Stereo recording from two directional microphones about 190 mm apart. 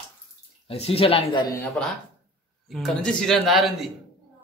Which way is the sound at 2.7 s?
Centre (ahead or behind).